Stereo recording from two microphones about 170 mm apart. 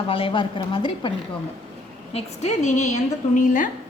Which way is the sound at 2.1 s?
40° left (ahead or behind).